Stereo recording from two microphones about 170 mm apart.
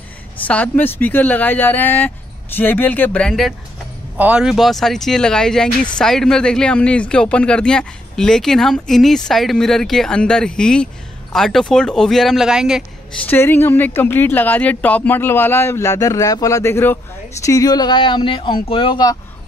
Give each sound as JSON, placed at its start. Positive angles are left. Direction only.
{"t": 0.4, "sound": "speech", "side_deg": 10}
{"t": 13.2, "sound": "speech", "side_deg": 10}